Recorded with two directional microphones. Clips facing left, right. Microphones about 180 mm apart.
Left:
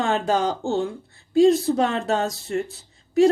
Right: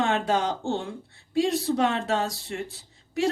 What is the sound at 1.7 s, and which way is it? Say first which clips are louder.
Speech: left 2 dB; 40° left (ahead or behind).